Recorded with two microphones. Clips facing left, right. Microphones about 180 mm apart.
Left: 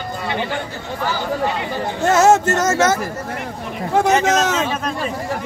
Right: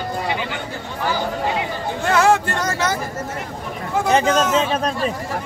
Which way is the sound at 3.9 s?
75° left (ahead or behind).